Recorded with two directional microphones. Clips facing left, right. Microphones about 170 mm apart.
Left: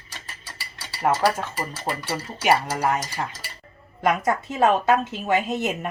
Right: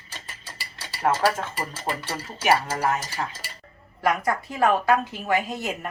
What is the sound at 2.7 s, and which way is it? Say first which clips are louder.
Speech: left 1 dB; 15° left (ahead or behind).